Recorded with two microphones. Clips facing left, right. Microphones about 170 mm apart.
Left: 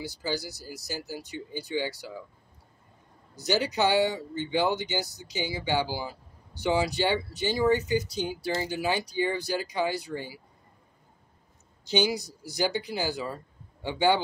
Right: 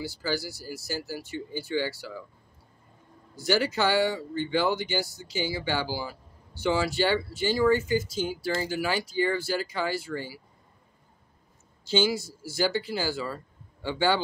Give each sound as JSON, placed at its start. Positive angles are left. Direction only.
{"t": 0.0, "sound": "speech", "side_deg": 20}
{"t": 3.3, "sound": "speech", "side_deg": 20}
{"t": 11.8, "sound": "a man's voice", "side_deg": 20}